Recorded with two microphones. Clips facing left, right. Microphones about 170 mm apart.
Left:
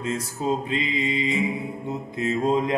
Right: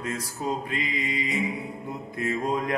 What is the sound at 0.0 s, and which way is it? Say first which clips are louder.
Mantra: left 4 dB; 25° left (ahead or behind).